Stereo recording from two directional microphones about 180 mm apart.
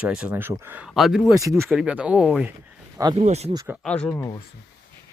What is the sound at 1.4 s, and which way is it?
Speech, 15° right (ahead or behind).